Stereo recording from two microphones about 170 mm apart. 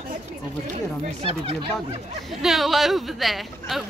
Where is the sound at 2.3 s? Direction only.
Centre (ahead or behind).